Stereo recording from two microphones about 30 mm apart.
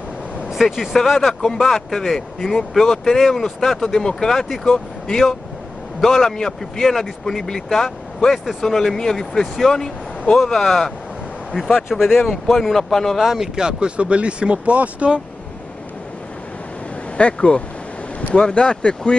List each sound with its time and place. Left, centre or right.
0.6 s speech: centre
1.0 s speech: centre
3.8 s speech: left
5.9 s a man's voice: centre
11.9 s speech: centre
13.2 s speech: centre
13.6 s speech: right
14.7 s speech: right
17.2 s speech: left